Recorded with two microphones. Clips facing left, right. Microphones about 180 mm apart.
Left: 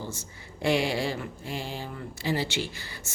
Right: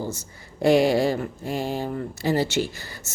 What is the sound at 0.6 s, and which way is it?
A woman's voice, 45° right (ahead or behind).